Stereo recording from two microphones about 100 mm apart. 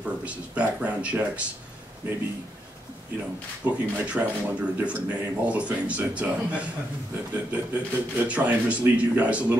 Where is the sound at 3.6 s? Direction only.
15° right (ahead or behind).